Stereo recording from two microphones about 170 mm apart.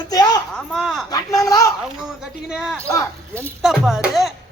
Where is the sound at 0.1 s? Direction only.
20° left (ahead or behind).